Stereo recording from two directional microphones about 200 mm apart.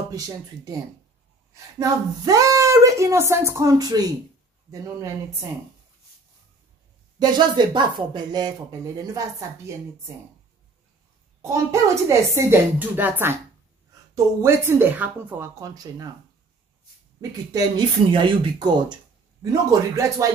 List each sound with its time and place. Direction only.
1.5 s a woman's voice: 15° right (ahead or behind)
7.2 s speech: 20° right (ahead or behind)
11.4 s a woman's voice: 15° right (ahead or behind)
17.2 s a woman's voice: 20° right (ahead or behind)